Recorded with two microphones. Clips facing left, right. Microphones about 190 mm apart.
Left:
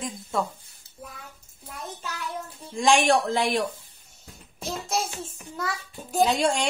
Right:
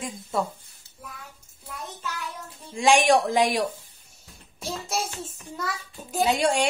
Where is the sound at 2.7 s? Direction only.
10° right (ahead or behind).